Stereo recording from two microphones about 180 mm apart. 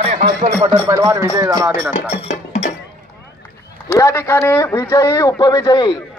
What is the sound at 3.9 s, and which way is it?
A man's voice, 15° left (ahead or behind).